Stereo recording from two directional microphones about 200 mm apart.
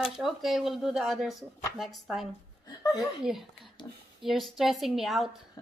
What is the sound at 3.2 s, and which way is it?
Speech, centre (ahead or behind).